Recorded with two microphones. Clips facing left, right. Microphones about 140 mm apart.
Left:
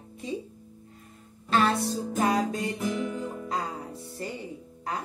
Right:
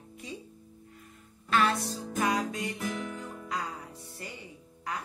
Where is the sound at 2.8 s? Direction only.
15° left (ahead or behind).